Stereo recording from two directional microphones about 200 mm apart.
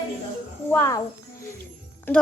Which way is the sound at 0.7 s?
15° left (ahead or behind).